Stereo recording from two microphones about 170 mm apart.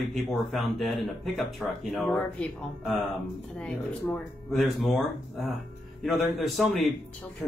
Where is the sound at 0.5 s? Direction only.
Centre (ahead or behind).